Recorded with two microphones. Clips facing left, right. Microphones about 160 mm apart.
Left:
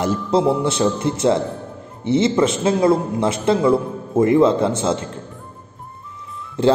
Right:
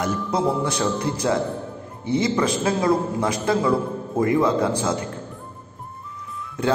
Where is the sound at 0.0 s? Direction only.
30° left (ahead or behind).